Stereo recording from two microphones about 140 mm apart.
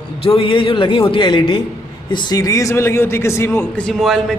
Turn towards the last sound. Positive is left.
turn(degrees=0)  # may be behind; listen again after turning